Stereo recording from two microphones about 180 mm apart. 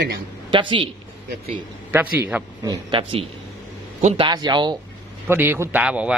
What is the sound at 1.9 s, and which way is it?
Speech, 10° right (ahead or behind).